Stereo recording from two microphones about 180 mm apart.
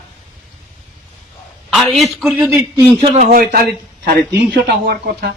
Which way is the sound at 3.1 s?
50° right (ahead or behind).